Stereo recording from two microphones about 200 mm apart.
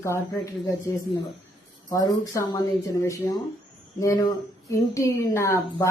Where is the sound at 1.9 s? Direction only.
15° left (ahead or behind).